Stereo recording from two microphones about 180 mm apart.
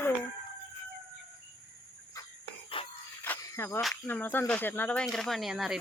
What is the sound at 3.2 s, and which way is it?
Cricket, 15° left (ahead or behind).